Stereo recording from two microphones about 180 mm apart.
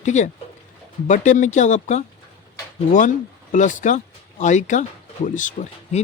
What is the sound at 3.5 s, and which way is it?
Speech, 45° left (ahead or behind).